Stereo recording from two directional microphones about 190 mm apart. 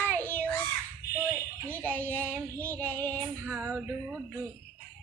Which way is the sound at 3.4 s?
10° right (ahead or behind).